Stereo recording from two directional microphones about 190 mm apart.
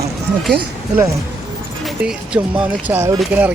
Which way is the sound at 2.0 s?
5° right (ahead or behind).